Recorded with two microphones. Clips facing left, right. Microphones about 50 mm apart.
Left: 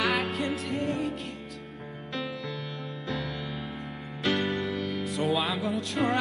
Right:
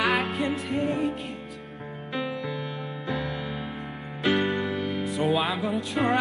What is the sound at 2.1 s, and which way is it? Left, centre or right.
Music, centre.